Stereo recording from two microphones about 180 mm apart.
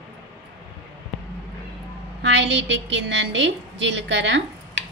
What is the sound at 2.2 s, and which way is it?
A woman's voice, 80° right.